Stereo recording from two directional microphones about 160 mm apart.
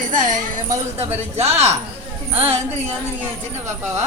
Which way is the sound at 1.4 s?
40° right (ahead or behind).